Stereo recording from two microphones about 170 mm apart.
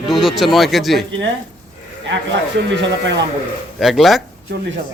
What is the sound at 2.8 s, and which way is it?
Speech, 90° right.